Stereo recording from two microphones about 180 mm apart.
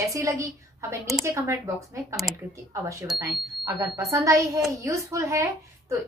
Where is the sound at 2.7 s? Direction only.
15° right (ahead or behind).